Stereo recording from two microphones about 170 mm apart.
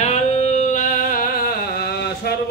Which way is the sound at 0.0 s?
40° left (ahead or behind).